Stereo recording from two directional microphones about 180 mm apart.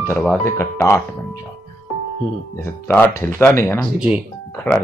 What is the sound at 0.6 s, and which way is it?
Speech, 15° left (ahead or behind).